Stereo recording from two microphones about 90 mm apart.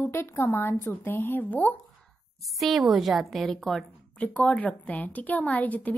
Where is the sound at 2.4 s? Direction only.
Centre (ahead or behind).